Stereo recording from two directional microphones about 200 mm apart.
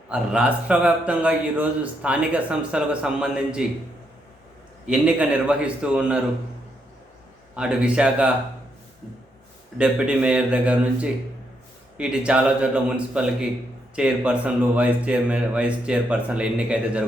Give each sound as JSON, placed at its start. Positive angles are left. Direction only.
{"t": 0.1, "sound": "a man's voice", "side_deg": -5}
{"t": 4.9, "sound": "a man's voice", "side_deg": -5}
{"t": 7.5, "sound": "a man's voice", "side_deg": -5}
{"t": 9.7, "sound": "a man's voice", "side_deg": -5}